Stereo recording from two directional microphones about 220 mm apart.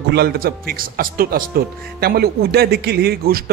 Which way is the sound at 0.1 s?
45° right (ahead or behind).